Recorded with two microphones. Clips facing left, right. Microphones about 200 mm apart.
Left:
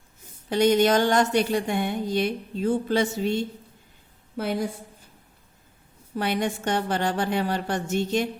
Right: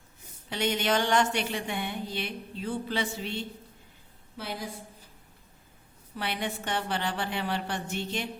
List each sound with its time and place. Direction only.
0.5 s speech: 40° left (ahead or behind)
6.1 s speech: 45° left (ahead or behind)